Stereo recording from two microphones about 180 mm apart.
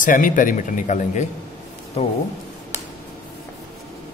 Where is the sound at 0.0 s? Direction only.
45° left (ahead or behind).